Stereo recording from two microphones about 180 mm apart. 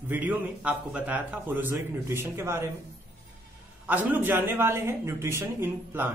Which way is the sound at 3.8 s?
10° right (ahead or behind).